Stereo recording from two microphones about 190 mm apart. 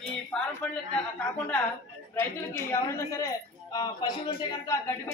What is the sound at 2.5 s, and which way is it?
A man's voice, 15° left (ahead or behind).